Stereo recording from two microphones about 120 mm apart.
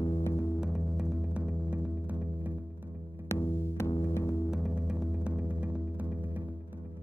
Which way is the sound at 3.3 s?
20° left (ahead or behind).